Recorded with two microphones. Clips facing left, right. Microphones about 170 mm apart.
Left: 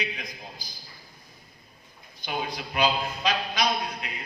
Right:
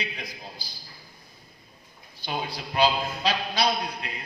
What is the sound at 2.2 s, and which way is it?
A man's voice, 30° right (ahead or behind).